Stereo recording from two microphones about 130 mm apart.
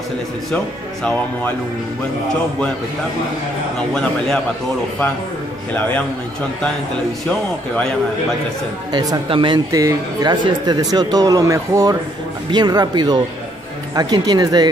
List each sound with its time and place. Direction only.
5.7 s speech: 10° left (ahead or behind)
7.2 s speech: 10° left (ahead or behind)
8.9 s speech: 30° right (ahead or behind)